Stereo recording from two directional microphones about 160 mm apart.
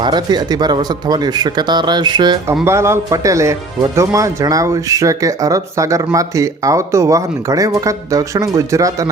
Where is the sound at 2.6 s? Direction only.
15° right (ahead or behind).